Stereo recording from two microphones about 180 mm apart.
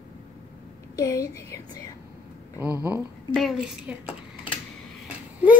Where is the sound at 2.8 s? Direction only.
5° right (ahead or behind).